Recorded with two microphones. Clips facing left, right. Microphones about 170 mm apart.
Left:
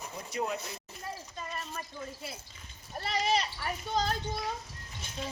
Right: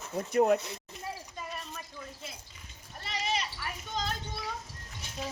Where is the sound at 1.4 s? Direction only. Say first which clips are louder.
Left 1 dB; centre (ahead or behind).